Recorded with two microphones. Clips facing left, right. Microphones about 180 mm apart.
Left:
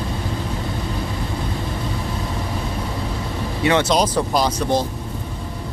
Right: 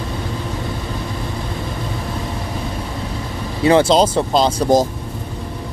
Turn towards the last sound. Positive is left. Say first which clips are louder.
# right 3 dB
turn(degrees=-25)  # may be behind; listen again after turning